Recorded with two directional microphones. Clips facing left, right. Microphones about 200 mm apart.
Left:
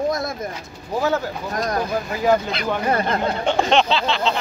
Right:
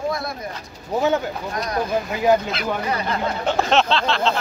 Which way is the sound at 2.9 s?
50° left (ahead or behind).